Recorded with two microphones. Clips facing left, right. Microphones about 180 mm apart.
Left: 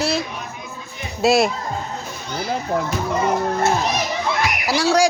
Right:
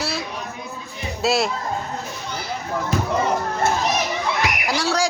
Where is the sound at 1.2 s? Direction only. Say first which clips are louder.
Left 5 dB; 15° left (ahead or behind).